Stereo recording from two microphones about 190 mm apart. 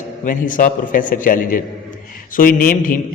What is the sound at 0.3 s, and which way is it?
A man's voice, 45° left (ahead or behind).